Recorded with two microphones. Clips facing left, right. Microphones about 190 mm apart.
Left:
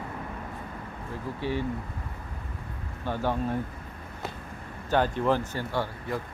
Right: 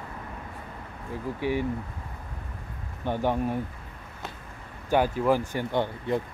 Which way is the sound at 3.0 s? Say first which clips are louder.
Right 2 dB; 15° right (ahead or behind).